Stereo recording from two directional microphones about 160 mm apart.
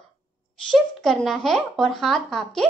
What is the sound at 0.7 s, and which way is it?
Speech, centre (ahead or behind).